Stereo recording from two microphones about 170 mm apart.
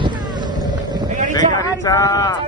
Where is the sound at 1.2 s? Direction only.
50° right (ahead or behind).